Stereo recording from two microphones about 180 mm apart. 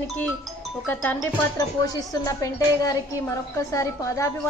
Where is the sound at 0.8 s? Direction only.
10° left (ahead or behind).